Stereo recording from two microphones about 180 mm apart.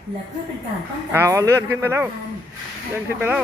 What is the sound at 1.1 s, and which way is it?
Speech, 15° right (ahead or behind).